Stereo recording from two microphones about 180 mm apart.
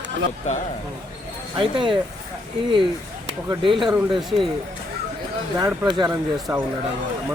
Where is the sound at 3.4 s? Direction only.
30° right (ahead or behind).